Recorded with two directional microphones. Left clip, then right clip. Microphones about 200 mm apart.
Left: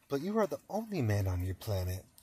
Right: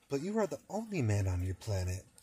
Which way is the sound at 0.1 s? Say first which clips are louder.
Left 2 dB; centre (ahead or behind).